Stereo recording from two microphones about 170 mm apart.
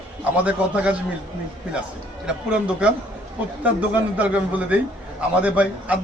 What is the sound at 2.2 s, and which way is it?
Speech, 5° right (ahead or behind).